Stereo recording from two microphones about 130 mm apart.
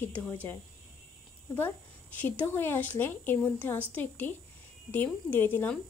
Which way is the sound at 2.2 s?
15° left (ahead or behind).